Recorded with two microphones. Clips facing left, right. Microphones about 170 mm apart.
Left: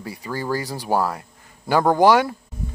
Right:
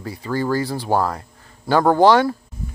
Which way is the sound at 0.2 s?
10° left (ahead or behind).